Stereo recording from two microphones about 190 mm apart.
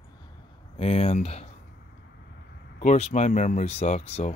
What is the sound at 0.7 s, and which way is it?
Speech, 30° left (ahead or behind).